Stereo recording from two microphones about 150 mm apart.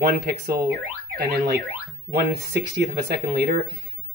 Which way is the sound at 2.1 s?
90° right.